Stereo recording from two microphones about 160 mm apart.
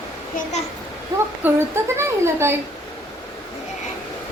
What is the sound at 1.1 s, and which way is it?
A woman's voice, 20° right (ahead or behind).